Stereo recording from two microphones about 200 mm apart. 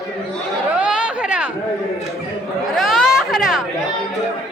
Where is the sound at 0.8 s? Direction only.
5° right (ahead or behind).